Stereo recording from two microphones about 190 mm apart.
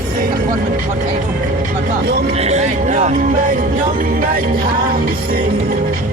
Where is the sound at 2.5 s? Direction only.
40° right (ahead or behind).